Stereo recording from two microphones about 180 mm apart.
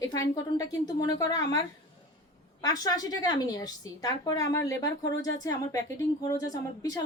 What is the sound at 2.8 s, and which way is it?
A woman's voice, 20° left (ahead or behind).